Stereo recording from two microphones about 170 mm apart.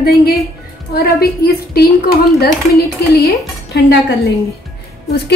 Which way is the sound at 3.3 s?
75° left (ahead or behind).